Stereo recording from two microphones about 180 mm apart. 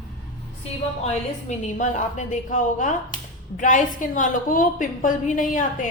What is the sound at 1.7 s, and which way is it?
A woman's voice, 45° left (ahead or behind).